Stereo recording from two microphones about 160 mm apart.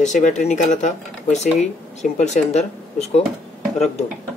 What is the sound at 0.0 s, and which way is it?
Speech, 50° left (ahead or behind).